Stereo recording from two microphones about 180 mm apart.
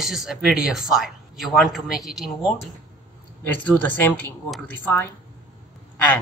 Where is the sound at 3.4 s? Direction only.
10° left (ahead or behind).